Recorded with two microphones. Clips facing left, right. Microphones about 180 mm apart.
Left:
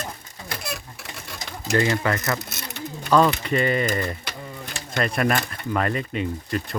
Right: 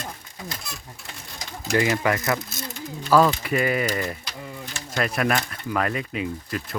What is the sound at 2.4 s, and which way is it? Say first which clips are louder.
Mechanisms: left 1 dB; 70° left (ahead or behind).